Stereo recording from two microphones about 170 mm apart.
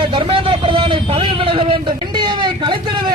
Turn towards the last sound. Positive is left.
turn(degrees=-25)  # may be behind; listen again after turning